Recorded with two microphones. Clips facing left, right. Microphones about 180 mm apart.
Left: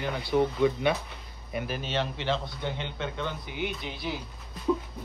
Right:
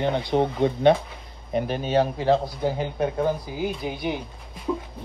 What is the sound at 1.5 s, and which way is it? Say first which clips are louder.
A man's voice: right 8 dB; 35° right (ahead or behind).